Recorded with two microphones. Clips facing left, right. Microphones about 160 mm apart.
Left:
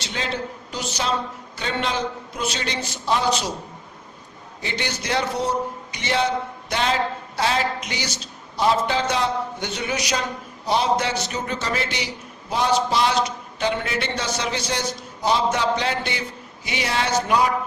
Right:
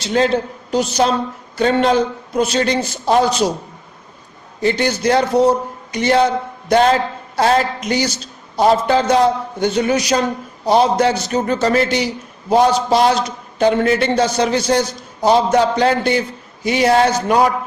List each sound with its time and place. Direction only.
0.0 s a man's voice: 45° right (ahead or behind)
4.6 s a man's voice: 45° right (ahead or behind)